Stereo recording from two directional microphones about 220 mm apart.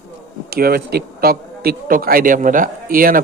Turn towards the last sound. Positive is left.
turn(degrees=-40)  # may be behind; listen again after turning